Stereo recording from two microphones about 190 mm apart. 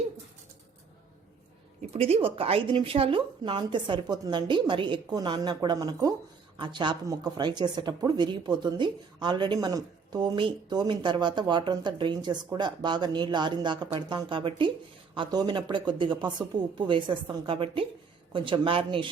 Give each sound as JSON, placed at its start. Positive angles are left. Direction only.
{"t": 1.9, "sound": "speech", "side_deg": -30}